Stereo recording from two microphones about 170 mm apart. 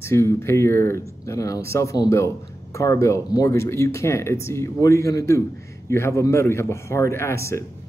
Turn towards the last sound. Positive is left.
turn(degrees=15)  # may be behind; listen again after turning